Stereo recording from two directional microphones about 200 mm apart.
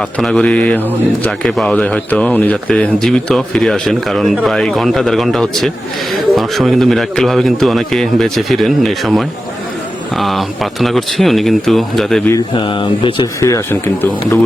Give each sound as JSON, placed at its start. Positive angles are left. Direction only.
{"t": 0.2, "sound": "speech", "side_deg": 5}
{"t": 12.3, "sound": "speech", "side_deg": 25}